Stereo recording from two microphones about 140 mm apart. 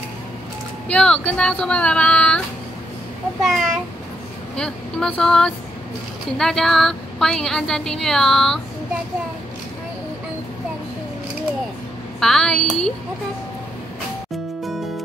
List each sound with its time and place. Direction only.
0.8 s speech: 10° left (ahead or behind)
3.4 s a woman's voice: centre (ahead or behind)
12.2 s a woman's voice: 5° left (ahead or behind)